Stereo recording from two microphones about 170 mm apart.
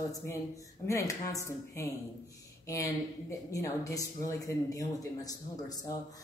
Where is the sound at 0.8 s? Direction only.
20° left (ahead or behind).